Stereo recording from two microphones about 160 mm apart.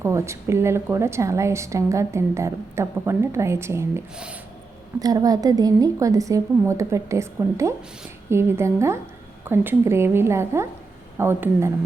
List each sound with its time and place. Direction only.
0.0 s a woman's voice: 15° right (ahead or behind)